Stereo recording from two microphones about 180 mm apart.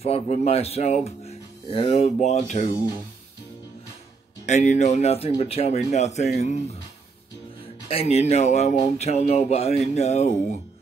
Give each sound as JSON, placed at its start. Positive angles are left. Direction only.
{"t": 0.0, "sound": "speech", "side_deg": 35}
{"t": 4.5, "sound": "speech", "side_deg": 40}
{"t": 7.9, "sound": "speech", "side_deg": 35}